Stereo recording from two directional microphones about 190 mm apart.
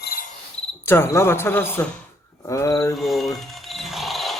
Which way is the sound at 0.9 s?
15° left (ahead or behind).